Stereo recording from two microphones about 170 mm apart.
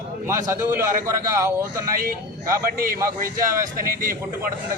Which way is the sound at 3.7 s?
55° right (ahead or behind).